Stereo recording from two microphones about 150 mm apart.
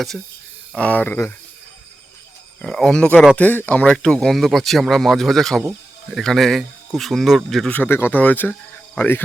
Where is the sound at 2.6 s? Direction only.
5° left (ahead or behind).